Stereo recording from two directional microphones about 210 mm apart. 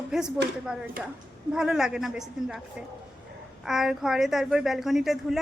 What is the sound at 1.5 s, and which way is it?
A woman's voice, centre (ahead or behind).